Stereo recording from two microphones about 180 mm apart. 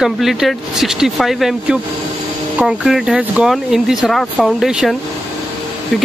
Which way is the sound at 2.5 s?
Centre (ahead or behind).